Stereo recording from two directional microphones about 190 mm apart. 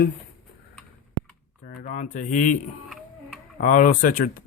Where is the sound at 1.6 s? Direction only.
45° left (ahead or behind).